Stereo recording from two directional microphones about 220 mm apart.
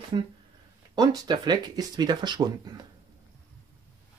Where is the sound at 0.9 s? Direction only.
20° right (ahead or behind).